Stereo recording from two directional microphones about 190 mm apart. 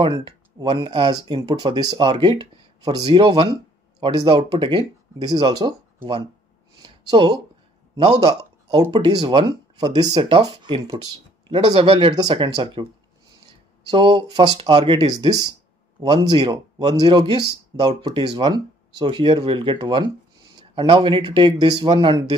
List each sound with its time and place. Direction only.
0.0 s speech: 25° right (ahead or behind)
6.8 s a sound: 25° right (ahead or behind)
8.9 s speech: 25° right (ahead or behind)
13.8 s speech: 25° right (ahead or behind)